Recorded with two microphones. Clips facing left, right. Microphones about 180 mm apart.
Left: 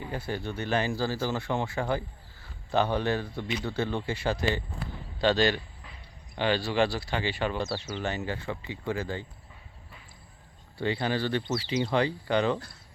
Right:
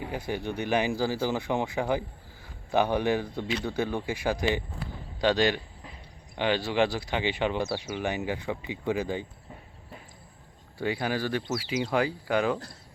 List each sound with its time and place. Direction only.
0.1 s speech: 15° right (ahead or behind)
10.8 s speech: 10° right (ahead or behind)